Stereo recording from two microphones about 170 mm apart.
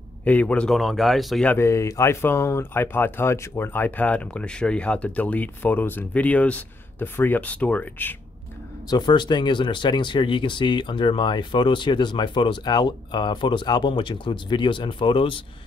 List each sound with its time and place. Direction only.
0.2 s speech: 10° left (ahead or behind)
8.8 s speech: 25° left (ahead or behind)